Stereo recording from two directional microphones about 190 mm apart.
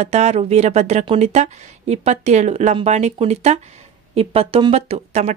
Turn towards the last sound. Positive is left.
turn(degrees=-35)  # may be behind; listen again after turning